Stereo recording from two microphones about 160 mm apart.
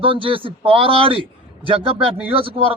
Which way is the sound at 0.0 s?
35° right (ahead or behind).